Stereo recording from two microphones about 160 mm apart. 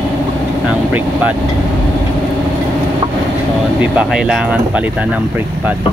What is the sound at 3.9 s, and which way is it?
Speech, 5° right (ahead or behind).